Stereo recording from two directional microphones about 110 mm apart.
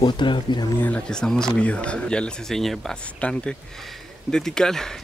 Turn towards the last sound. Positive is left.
turn(degrees=5)  # may be behind; listen again after turning